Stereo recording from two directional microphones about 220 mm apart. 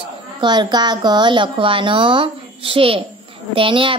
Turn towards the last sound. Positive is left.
turn(degrees=-25)  # may be behind; listen again after turning